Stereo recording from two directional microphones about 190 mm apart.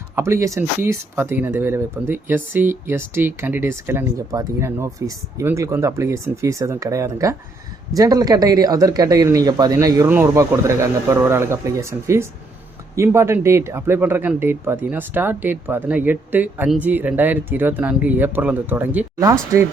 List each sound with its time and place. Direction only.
0.2 s speech: 15° right (ahead or behind)